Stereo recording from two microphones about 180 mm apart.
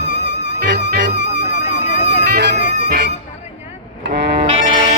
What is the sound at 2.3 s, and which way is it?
Music, 60° right (ahead or behind).